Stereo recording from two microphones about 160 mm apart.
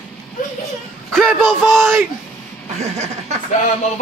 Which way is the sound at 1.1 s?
5° left (ahead or behind).